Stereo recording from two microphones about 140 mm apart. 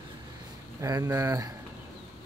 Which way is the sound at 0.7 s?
25° right (ahead or behind).